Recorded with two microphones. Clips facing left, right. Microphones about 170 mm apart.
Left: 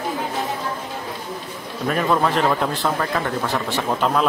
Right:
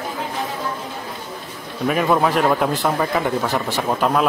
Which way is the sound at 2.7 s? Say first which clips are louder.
Right 3 dB; 15° right (ahead or behind).